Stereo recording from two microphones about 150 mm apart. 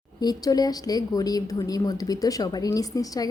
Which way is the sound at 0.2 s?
25° left (ahead or behind).